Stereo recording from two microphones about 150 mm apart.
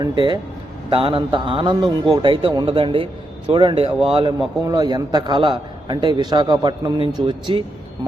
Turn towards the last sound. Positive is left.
turn(degrees=-30)  # may be behind; listen again after turning